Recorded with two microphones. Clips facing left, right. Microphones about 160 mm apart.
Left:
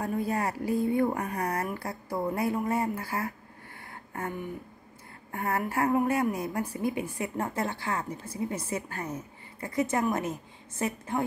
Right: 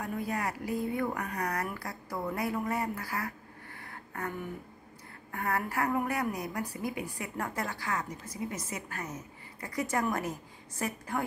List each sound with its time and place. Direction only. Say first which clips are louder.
0.0 s speech: left 4 dB; 30° left (ahead or behind)
5.3 s a woman's voice: left 3 dB; 25° left (ahead or behind)